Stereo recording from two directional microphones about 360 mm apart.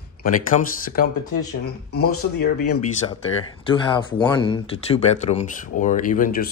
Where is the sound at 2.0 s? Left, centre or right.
Left.